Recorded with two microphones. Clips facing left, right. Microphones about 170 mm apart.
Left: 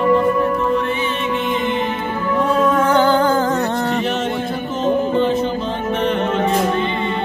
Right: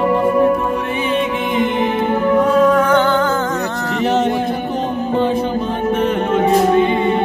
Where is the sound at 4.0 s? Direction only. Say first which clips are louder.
Right 5 dB; 20° right (ahead or behind).